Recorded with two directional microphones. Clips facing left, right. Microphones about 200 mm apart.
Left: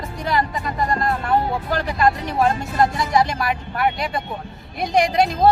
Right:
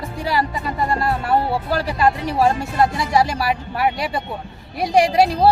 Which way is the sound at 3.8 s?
5° right (ahead or behind).